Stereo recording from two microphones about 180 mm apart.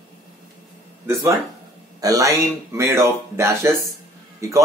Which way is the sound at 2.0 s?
20° right (ahead or behind).